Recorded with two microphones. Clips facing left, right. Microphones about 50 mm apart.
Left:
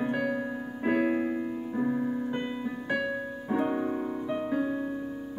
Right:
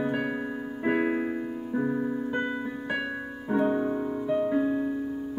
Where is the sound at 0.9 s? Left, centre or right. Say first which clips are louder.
Left 1 dB; centre.